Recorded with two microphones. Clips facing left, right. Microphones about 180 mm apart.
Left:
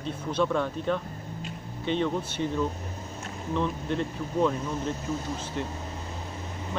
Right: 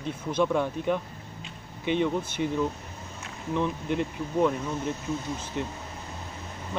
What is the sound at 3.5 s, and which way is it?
Speech, 15° right (ahead or behind).